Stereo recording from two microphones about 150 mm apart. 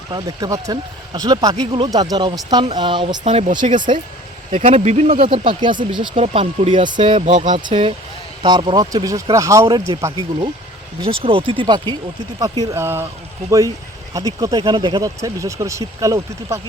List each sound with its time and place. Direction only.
0.1 s speech: 25° right (ahead or behind)
3.6 s speech: 45° right (ahead or behind)
6.7 s speech: 35° right (ahead or behind)
7.2 s speech: 55° right (ahead or behind)
7.6 s speech: 35° right (ahead or behind)
11.0 s speech: 40° right (ahead or behind); by 13.1 s 15° right (ahead or behind)
14.1 s speech: 25° right (ahead or behind)